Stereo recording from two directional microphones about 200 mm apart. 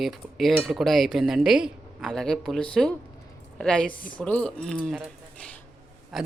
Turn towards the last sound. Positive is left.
turn(degrees=0)  # may be behind; listen again after turning